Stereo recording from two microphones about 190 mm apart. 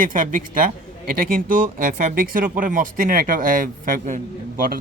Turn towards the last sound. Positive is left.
turn(degrees=-45)  # may be behind; listen again after turning